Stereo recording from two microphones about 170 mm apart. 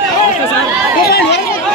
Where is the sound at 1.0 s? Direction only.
70° left (ahead or behind).